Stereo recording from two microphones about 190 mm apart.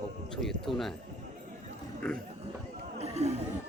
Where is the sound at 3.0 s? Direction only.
35° right (ahead or behind).